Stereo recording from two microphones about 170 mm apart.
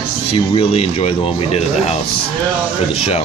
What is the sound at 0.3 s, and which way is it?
Speech, 35° left (ahead or behind).